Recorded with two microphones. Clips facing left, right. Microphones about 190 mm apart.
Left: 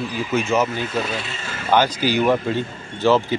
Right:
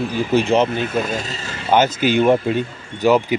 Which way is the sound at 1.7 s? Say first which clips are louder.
Right 2 dB; 20° right (ahead or behind).